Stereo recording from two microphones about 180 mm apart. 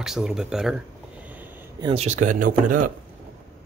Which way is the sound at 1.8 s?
35° right (ahead or behind).